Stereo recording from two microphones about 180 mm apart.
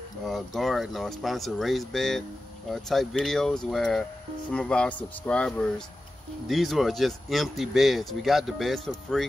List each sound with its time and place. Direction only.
0.3 s speech: centre (ahead or behind)